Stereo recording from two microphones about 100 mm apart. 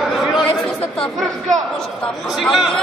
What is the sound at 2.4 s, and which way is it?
Speech, centre (ahead or behind).